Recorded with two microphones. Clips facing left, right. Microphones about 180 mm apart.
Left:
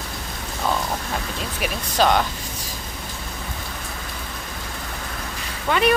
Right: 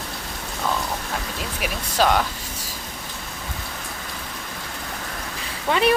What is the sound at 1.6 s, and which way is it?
Speech, 5° right (ahead or behind).